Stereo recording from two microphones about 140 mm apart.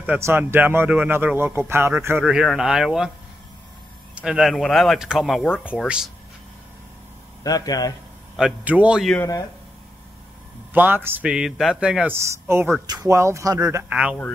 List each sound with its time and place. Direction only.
0.0 s speech: 15° right (ahead or behind)
2.2 s speech: 5° right (ahead or behind)
4.1 s speech: 5° right (ahead or behind)
7.4 s speech: 25° left (ahead or behind)
8.4 s speech: 10° right (ahead or behind)
10.7 s speech: 15° right (ahead or behind)
12.3 s speech: 20° right (ahead or behind)
13.8 s speech: 5° right (ahead or behind)